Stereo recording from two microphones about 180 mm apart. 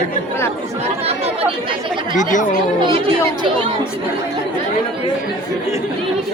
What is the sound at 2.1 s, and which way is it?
Speech, 45° left (ahead or behind).